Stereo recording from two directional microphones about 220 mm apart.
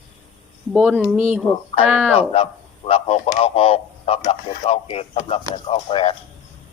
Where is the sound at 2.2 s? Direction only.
25° left (ahead or behind).